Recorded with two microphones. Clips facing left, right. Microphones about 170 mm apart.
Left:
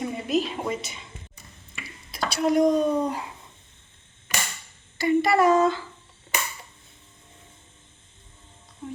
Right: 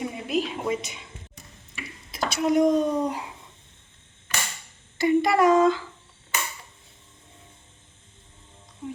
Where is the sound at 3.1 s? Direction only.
15° right (ahead or behind).